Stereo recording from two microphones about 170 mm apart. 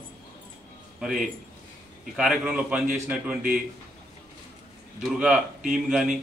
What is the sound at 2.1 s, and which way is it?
A man's voice, 5° right (ahead or behind).